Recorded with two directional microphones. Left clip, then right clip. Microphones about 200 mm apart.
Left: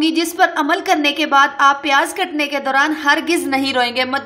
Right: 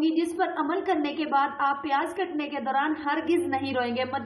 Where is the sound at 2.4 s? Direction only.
30° left (ahead or behind).